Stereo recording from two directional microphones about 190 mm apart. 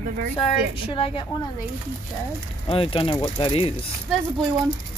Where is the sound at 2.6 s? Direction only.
25° left (ahead or behind).